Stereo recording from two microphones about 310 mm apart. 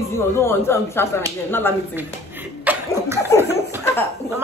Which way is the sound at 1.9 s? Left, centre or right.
Centre.